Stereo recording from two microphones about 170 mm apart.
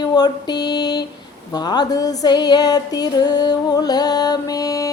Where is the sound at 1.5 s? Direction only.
25° left (ahead or behind).